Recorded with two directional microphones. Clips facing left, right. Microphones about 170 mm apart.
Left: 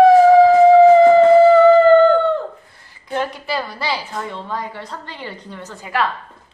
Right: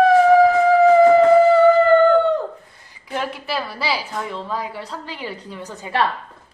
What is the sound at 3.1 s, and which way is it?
A woman's voice, 5° right (ahead or behind).